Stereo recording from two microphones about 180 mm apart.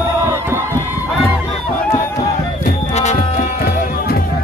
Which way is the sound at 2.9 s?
40° left (ahead or behind).